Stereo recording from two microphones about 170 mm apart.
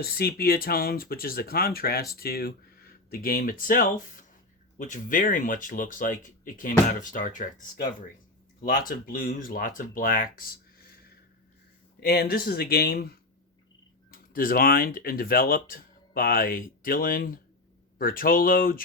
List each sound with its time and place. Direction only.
0.0 s speech: 65° left (ahead or behind); by 7.4 s 50° left (ahead or behind)
8.9 s speech: 55° left (ahead or behind)
11.9 s speech: 65° left (ahead or behind)